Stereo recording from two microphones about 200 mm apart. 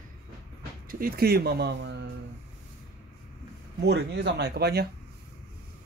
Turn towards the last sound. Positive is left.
turn(degrees=-55)  # may be behind; listen again after turning